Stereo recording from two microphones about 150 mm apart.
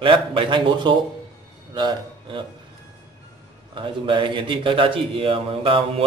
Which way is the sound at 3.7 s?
35° right (ahead or behind).